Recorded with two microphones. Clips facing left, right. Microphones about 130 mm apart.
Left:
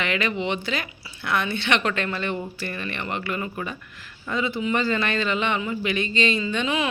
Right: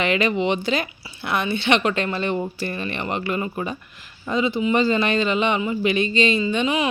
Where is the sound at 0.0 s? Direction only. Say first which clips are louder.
Right 5 dB; 20° right (ahead or behind).